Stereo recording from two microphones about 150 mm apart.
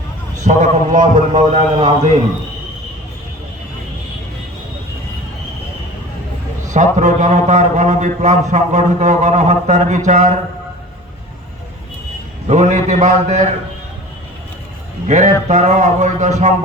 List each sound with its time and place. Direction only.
0.4 s a man's voice: 55° right (ahead or behind)
1.4 s a man's voice: 50° right (ahead or behind)
6.7 s a man's voice: 55° right (ahead or behind)
12.5 s a man's voice: 55° right (ahead or behind)
15.0 s a man's voice: 55° right (ahead or behind)